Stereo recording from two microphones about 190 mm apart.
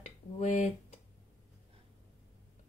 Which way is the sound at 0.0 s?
40° left (ahead or behind).